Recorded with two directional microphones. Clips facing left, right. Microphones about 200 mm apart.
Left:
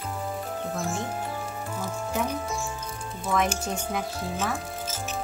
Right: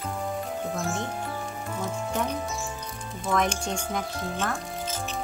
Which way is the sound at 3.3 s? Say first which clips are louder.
Even; 5° left (ahead or behind).